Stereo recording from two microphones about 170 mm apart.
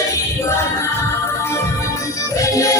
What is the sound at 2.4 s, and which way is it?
Music, 20° left (ahead or behind).